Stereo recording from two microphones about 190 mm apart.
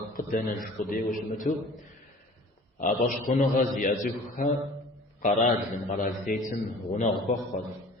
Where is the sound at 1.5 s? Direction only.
45° left (ahead or behind).